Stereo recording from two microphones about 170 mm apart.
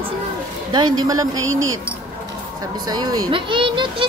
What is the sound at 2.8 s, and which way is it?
A woman's voice, 25° right (ahead or behind).